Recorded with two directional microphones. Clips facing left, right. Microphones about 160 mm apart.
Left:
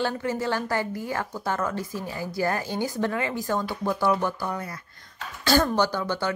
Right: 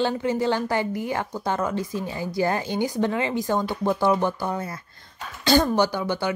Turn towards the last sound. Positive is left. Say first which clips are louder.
# right 2 dB
turn(degrees=-15)  # may be behind; listen again after turning